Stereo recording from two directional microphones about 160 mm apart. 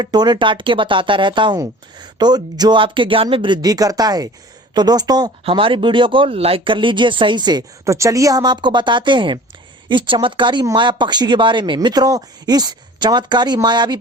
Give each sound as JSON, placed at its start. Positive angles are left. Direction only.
{"t": 0.0, "sound": "speech", "side_deg": -25}